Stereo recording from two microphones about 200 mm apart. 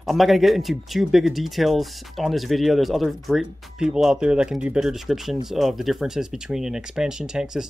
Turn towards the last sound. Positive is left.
turn(degrees=-5)  # may be behind; listen again after turning